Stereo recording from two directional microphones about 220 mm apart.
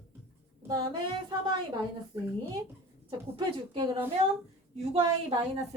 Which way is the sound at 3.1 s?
20° right (ahead or behind).